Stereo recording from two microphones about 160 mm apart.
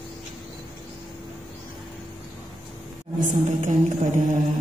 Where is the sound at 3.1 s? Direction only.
50° right (ahead or behind).